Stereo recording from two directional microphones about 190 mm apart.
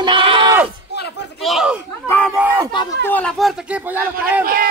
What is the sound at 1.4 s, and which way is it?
Speech, centre (ahead or behind).